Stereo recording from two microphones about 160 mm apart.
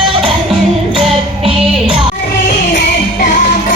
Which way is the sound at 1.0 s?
35° right (ahead or behind).